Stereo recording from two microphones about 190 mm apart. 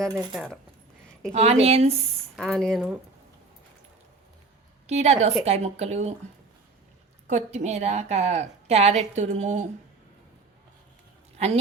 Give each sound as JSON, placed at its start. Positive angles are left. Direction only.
{"t": 0.1, "sound": "speech", "side_deg": -20}
{"t": 0.3, "sound": "speech", "side_deg": 0}
{"t": 1.3, "sound": "a woman's voice", "side_deg": -35}
{"t": 2.3, "sound": "speech", "side_deg": 0}
{"t": 4.9, "sound": "a woman's voice", "side_deg": -35}
{"t": 7.3, "sound": "a woman's voice", "side_deg": -35}
{"t": 11.3, "sound": "a woman's voice", "side_deg": -35}